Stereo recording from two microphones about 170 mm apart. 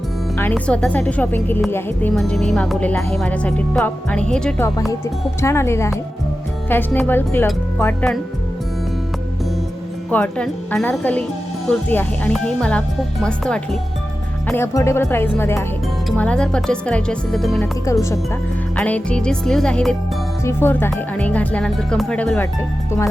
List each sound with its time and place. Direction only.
0.3 s speech: 10° left (ahead or behind)
5.4 s speech: 15° left (ahead or behind)
10.1 s speech: 10° left (ahead or behind)
14.5 s speech: 15° left (ahead or behind); by 17.7 s centre (ahead or behind)
17.9 s speech: 20° left (ahead or behind)
18.8 s speech: 5° left (ahead or behind)